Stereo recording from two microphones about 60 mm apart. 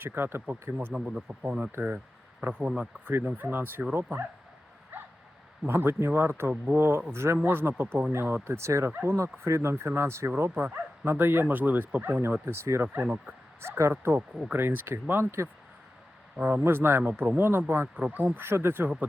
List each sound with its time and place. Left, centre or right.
0.0 s speech: right
0.9 s speech: centre
2.4 s speech: right
4.9 s a sound: right
5.6 s speech: right
8.9 s speech: right
9.1 s speech: right
10.3 s speech: right
12.3 s speech: right
13.9 s speech: right
16.5 s speech: right